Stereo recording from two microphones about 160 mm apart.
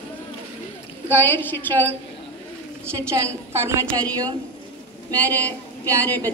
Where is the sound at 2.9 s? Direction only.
20° right (ahead or behind).